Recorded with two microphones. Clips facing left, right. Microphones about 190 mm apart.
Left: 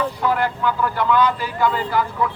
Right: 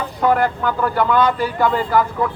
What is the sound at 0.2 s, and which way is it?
A man's voice, 50° right (ahead or behind).